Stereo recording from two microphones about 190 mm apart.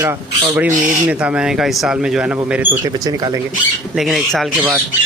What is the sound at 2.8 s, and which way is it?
Speech, 20° right (ahead or behind).